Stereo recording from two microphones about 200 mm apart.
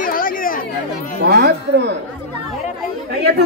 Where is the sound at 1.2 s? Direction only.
55° right (ahead or behind).